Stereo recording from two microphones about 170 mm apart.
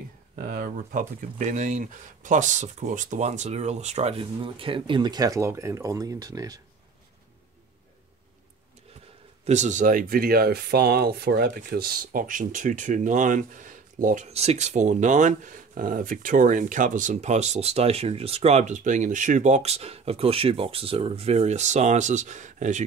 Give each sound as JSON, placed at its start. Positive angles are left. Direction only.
{"t": 0.4, "sound": "speech", "side_deg": -55}
{"t": 9.4, "sound": "speech", "side_deg": -45}